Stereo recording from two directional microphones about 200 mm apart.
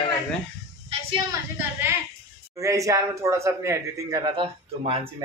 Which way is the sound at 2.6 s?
15° right (ahead or behind).